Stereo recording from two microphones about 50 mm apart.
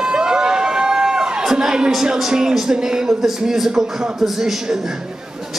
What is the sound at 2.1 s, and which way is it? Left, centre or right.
A man's voice, centre.